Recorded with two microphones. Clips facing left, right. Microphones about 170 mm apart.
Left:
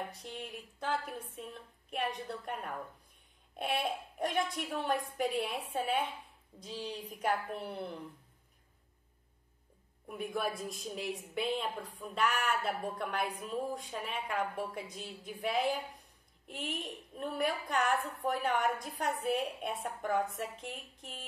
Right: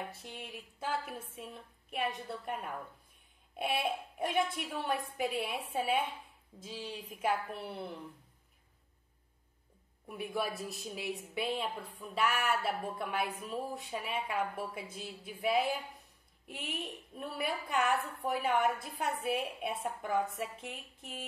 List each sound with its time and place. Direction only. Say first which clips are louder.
0.1 s a woman's voice: left 2 dB; centre (ahead or behind)
10.3 s a woman's voice: even; 5° right (ahead or behind)